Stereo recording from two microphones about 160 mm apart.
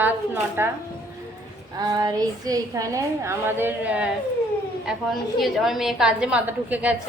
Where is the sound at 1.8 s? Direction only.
25° right (ahead or behind); by 4.1 s 10° right (ahead or behind).